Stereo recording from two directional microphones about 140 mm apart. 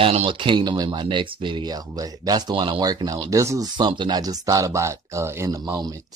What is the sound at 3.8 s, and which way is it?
Speech, 35° right (ahead or behind).